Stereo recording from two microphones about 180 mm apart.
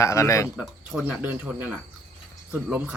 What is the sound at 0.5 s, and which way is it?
Speech, 5° right (ahead or behind).